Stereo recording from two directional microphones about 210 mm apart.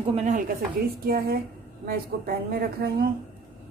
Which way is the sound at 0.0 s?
30° right (ahead or behind).